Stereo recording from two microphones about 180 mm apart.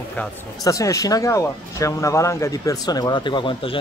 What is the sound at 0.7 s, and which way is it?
Speech, 20° left (ahead or behind).